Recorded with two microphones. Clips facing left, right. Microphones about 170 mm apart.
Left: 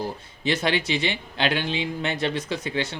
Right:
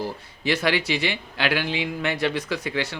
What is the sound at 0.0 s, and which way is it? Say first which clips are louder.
Speech: even; 25° left (ahead or behind).